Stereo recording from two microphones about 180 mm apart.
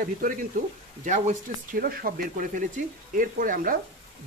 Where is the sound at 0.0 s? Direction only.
50° right (ahead or behind).